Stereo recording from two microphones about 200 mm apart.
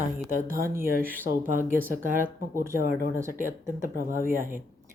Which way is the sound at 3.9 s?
40° right (ahead or behind).